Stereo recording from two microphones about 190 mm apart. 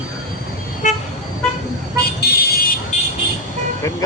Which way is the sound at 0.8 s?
40° left (ahead or behind).